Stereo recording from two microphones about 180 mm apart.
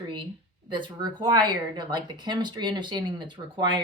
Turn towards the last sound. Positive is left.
turn(degrees=-25)  # may be behind; listen again after turning